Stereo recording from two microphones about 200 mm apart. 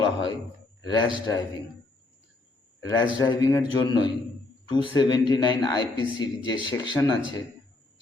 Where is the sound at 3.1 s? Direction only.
20° left (ahead or behind).